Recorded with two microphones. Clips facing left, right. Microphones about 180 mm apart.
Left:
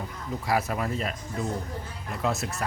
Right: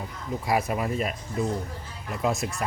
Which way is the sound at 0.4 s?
15° right (ahead or behind).